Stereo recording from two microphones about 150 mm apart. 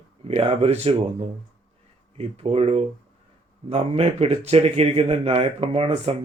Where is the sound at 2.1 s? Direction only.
40° right (ahead or behind).